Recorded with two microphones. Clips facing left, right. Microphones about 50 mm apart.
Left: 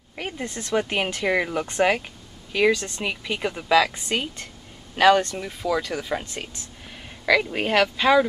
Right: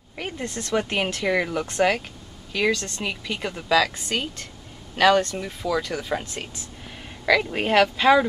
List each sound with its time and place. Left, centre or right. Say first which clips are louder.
0.1 s speech: even; centre
7.2 s speech: even; centre